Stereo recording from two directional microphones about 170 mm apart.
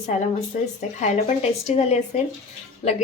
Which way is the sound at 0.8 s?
40° left (ahead or behind).